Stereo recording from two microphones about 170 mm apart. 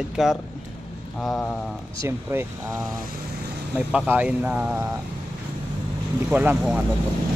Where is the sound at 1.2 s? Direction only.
15° left (ahead or behind).